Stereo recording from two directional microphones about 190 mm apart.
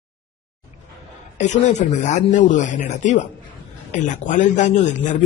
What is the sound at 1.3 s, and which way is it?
Speech, 40° left (ahead or behind).